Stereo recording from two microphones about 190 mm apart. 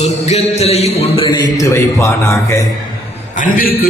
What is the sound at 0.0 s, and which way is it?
A man's voice, 35° left (ahead or behind).